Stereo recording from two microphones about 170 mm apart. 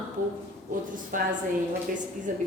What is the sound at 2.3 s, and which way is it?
Speech, 50° right (ahead or behind).